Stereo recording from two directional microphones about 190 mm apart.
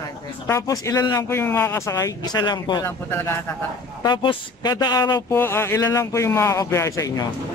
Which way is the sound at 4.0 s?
20° left (ahead or behind).